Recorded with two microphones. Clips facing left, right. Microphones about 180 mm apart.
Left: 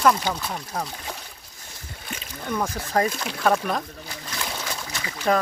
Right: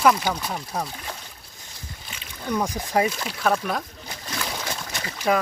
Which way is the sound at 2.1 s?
55° left (ahead or behind).